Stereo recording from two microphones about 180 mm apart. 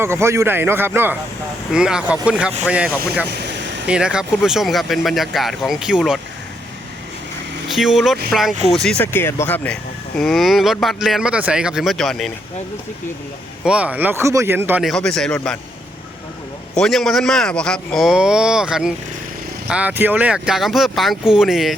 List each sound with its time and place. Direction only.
0.0 s speech: 15° right (ahead or behind)
3.2 s vehicle: 70° right (ahead or behind)
3.8 s speech: 5° right (ahead or behind)
7.7 s speech: centre (ahead or behind)
10.2 s speech: centre (ahead or behind)
13.7 s speech: 5° right (ahead or behind)
14.8 s speech: centre (ahead or behind)
16.7 s speech: centre (ahead or behind)